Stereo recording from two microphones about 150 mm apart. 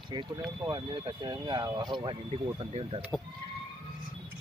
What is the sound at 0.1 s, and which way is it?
Speech, 30° right (ahead or behind).